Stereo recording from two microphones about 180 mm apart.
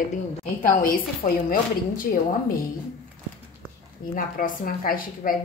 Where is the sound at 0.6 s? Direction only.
50° left (ahead or behind).